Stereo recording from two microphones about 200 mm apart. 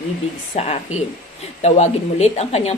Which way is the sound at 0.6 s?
35° left (ahead or behind).